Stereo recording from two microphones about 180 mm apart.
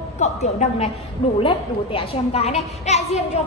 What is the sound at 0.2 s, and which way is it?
A woman's voice, 40° left (ahead or behind).